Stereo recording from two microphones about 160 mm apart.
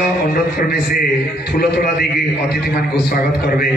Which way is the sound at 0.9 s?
70° left (ahead or behind).